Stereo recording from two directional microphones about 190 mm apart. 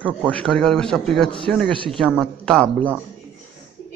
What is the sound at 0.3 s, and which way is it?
A man's voice, 5° left (ahead or behind).